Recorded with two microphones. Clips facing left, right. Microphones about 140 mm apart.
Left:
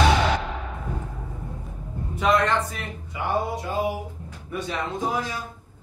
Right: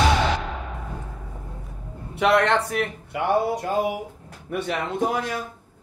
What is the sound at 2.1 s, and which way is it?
A man's voice, 70° right (ahead or behind).